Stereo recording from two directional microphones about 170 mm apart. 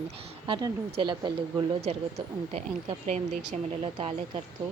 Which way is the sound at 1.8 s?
40° right (ahead or behind).